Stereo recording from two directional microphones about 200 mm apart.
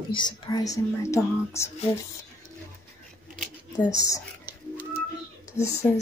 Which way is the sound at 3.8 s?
15° left (ahead or behind).